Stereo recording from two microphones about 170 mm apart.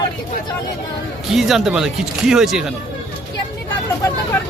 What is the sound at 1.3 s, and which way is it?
Speech, centre (ahead or behind).